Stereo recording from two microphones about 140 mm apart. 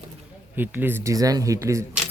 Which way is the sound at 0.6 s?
15° right (ahead or behind).